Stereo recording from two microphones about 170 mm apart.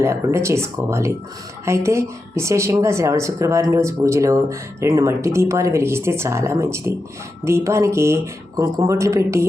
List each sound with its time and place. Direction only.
0.0 s a woman's voice: 15° right (ahead or behind)